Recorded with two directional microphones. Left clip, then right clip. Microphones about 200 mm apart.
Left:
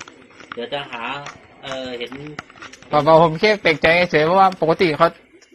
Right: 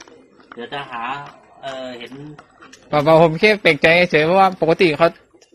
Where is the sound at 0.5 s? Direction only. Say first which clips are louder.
Left 1 dB; 25° right (ahead or behind).